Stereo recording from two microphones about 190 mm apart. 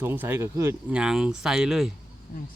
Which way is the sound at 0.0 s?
10° right (ahead or behind).